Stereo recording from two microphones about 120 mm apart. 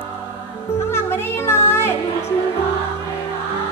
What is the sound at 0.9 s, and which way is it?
Music, 20° left (ahead or behind).